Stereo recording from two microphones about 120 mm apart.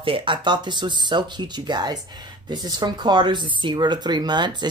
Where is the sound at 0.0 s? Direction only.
45° right (ahead or behind).